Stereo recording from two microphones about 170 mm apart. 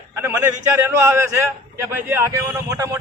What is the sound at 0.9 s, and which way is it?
A man's voice, 15° right (ahead or behind).